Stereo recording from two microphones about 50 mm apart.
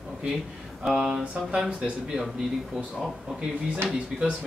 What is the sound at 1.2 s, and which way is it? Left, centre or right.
Speech, centre.